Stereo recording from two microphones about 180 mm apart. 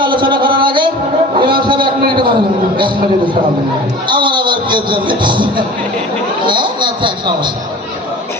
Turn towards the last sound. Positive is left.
turn(degrees=-25)  # may be behind; listen again after turning